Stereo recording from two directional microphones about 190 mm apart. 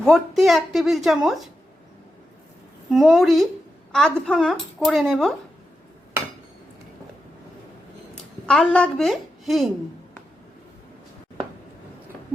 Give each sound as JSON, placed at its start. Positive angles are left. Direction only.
{"t": 0.0, "sound": "speech", "side_deg": 0}
{"t": 2.9, "sound": "speech", "side_deg": 0}
{"t": 8.1, "sound": "a woman's voice", "side_deg": 5}